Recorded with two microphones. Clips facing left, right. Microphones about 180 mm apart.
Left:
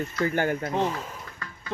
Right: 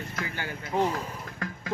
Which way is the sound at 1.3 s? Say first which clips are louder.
Right 6 dB; 85° right.